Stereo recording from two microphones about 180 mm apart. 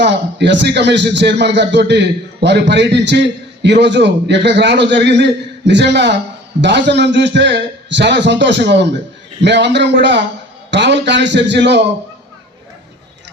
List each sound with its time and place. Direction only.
0.0 s a man's voice: 70° right (ahead or behind)